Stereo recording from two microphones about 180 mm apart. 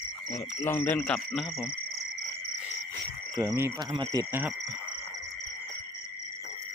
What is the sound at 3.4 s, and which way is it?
Speech, 20° right (ahead or behind).